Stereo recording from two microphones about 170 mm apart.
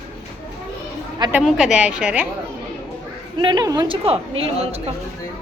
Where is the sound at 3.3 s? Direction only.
25° right (ahead or behind).